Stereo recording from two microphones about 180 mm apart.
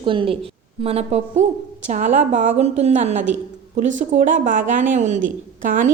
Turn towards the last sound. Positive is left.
turn(degrees=-45)  # may be behind; listen again after turning